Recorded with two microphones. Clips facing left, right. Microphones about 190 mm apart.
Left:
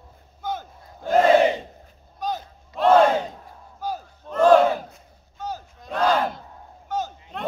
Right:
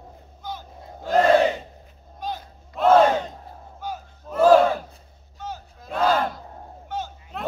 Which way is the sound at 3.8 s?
35° left (ahead or behind).